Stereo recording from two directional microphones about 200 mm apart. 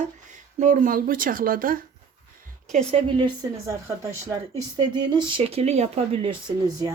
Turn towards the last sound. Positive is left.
turn(degrees=-20)  # may be behind; listen again after turning